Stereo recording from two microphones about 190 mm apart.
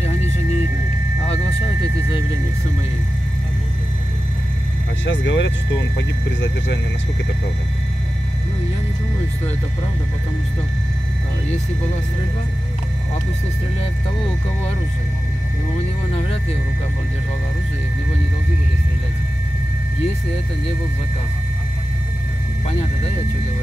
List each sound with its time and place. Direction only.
1.2 s a sound: 30° left (ahead or behind)
5.0 s speech: 70° left (ahead or behind)
16.1 s speech: 30° left (ahead or behind)